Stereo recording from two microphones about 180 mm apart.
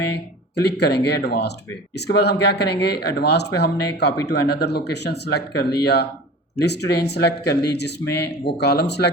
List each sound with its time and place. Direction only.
0.5 s speech: 65° left (ahead or behind)